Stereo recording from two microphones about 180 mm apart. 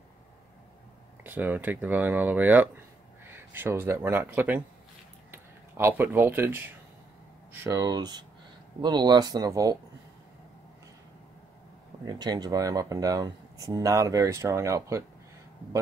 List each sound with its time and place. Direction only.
1.2 s speech: 10° right (ahead or behind)
12.0 s speech: 25° right (ahead or behind)